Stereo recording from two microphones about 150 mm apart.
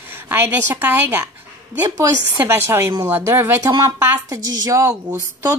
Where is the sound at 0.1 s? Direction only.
15° right (ahead or behind).